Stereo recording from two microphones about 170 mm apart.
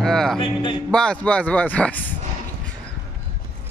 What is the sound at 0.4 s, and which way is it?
Speech, 25° left (ahead or behind).